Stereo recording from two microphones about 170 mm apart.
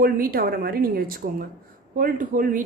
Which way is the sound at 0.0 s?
60° right (ahead or behind).